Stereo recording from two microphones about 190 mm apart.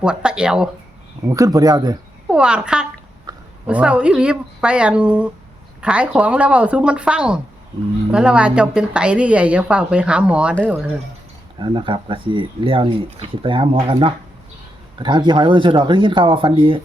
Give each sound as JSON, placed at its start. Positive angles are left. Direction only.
{"t": 0.0, "sound": "a woman's voice", "side_deg": -5}
{"t": 1.3, "sound": "speech", "side_deg": -20}
{"t": 2.3, "sound": "a woman's voice", "side_deg": -5}
{"t": 11.5, "sound": "speech", "side_deg": -25}